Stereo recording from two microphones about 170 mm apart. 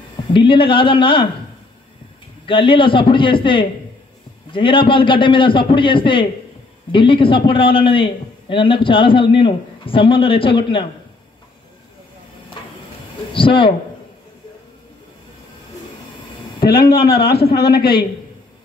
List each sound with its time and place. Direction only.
0.3 s a man's voice: 30° left (ahead or behind)
2.4 s a man's voice: 30° left (ahead or behind)
13.3 s speech: 30° left (ahead or behind)
16.6 s a man's voice: 65° left (ahead or behind)